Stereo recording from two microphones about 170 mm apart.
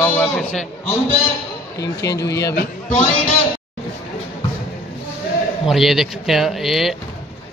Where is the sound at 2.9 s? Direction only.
40° left (ahead or behind).